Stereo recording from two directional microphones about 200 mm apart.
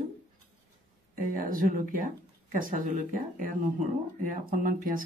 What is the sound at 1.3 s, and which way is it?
Speech, 45° right (ahead or behind).